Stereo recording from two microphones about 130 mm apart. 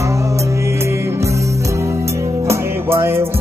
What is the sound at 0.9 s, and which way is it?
Music, 20° right (ahead or behind).